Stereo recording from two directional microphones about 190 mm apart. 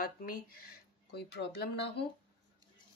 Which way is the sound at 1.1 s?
60° left (ahead or behind).